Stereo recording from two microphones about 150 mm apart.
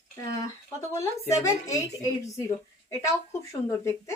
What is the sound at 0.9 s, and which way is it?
A woman's voice, 20° left (ahead or behind).